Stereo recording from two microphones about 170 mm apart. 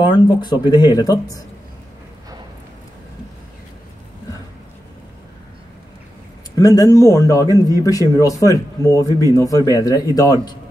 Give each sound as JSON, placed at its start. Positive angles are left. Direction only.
{"t": 0.0, "sound": "a man's voice", "side_deg": 25}
{"t": 6.5, "sound": "a man's voice", "side_deg": 20}